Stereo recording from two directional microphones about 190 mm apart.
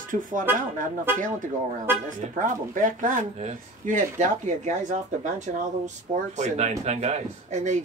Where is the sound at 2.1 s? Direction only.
45° right (ahead or behind).